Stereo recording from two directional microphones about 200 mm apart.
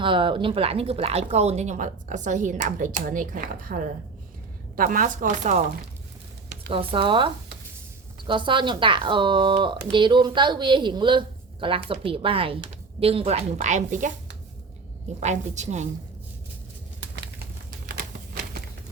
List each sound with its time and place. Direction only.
0.0 s speech: 25° right (ahead or behind); by 3.8 s 45° right (ahead or behind)
4.8 s speech: 40° right (ahead or behind)
6.7 s speech: 25° right (ahead or behind)
15.2 s speech: 35° right (ahead or behind)
17.7 s a sound: 45° right (ahead or behind)